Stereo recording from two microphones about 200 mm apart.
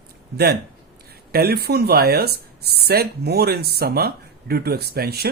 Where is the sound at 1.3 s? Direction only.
50° right (ahead or behind).